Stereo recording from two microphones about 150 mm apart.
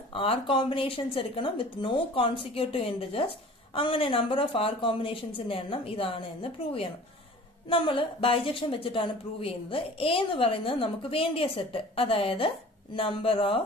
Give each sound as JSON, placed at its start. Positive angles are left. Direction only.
{"t": 0.1, "sound": "a woman's voice", "side_deg": 35}